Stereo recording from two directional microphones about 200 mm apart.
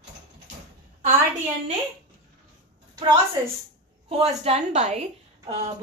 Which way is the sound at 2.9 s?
20° right (ahead or behind).